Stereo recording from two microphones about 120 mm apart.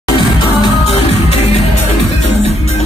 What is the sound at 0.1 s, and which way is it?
Music, 40° left (ahead or behind).